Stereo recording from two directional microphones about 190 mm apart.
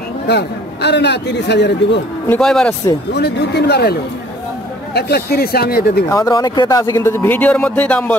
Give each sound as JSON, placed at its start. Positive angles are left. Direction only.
{"t": 0.3, "sound": "a man's voice", "side_deg": 60}
{"t": 2.2, "sound": "speech", "side_deg": 5}
{"t": 3.1, "sound": "a man's voice", "side_deg": 60}
{"t": 6.0, "sound": "speech", "side_deg": 15}